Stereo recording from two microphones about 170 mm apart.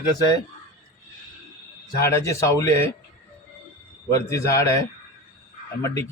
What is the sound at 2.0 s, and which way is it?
Speech, 15° left (ahead or behind).